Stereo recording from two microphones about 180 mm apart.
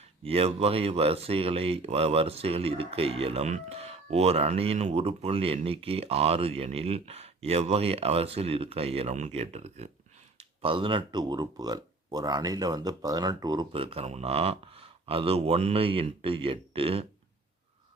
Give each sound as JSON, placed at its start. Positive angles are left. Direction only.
{"t": 0.3, "sound": "speech", "side_deg": -35}